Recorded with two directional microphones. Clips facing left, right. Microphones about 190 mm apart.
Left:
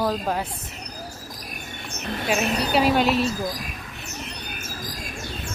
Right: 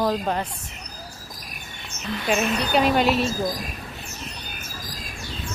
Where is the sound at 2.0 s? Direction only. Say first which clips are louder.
Even; 50° left (ahead or behind).